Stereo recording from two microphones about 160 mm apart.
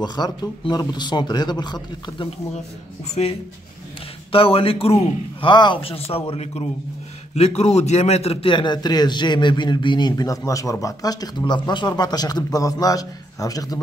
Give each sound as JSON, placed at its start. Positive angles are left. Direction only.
{"t": 0.0, "sound": "a man's voice", "side_deg": 25}
{"t": 3.2, "sound": "a man's voice", "side_deg": 45}